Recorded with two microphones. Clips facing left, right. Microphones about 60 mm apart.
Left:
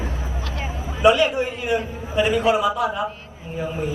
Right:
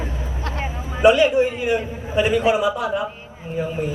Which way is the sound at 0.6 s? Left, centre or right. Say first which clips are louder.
Right 2 dB; right.